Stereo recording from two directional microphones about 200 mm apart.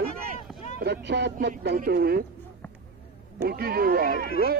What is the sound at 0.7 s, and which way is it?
Speech, 55° right (ahead or behind).